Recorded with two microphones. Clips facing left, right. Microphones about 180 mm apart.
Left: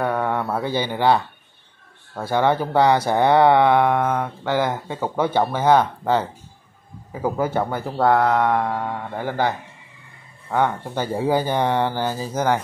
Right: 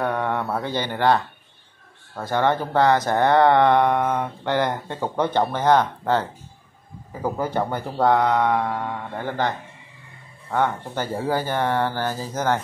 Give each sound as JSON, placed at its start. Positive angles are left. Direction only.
{"t": 0.0, "sound": "speech", "side_deg": 5}